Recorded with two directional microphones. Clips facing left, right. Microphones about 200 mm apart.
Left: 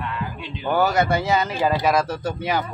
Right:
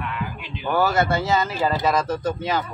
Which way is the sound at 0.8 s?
15° left (ahead or behind).